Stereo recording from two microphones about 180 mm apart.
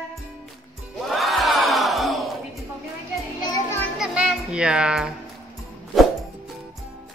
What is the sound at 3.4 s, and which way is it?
Music, 20° left (ahead or behind).